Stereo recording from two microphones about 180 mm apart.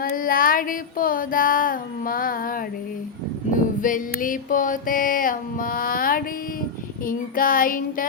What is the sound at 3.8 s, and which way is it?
Mantra, 45° left (ahead or behind).